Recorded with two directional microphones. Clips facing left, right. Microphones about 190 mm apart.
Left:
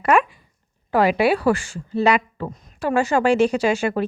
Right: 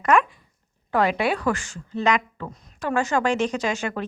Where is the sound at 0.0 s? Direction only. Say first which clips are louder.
Left 2 dB; 10° left (ahead or behind).